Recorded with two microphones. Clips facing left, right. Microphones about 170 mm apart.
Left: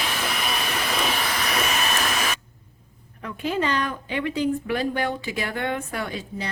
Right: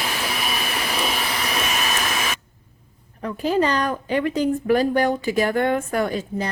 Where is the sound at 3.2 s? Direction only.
40° right (ahead or behind).